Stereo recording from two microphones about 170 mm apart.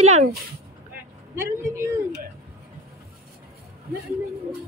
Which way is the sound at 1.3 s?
15° right (ahead or behind).